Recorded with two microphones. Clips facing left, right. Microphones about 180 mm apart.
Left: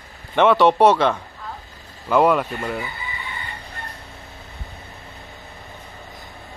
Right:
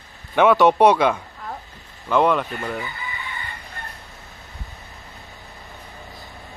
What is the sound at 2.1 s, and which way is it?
Speech, 5° left (ahead or behind).